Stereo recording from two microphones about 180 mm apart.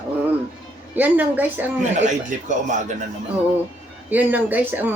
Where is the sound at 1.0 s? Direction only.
10° right (ahead or behind).